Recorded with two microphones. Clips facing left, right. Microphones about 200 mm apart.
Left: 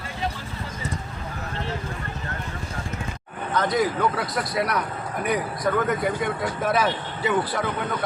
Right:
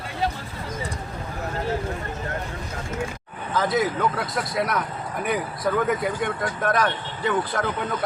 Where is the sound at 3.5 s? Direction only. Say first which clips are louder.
Even; centre (ahead or behind).